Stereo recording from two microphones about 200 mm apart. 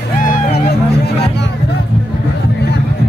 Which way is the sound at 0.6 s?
55° left (ahead or behind).